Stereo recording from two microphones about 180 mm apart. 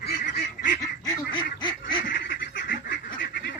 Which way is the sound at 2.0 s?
50° left (ahead or behind).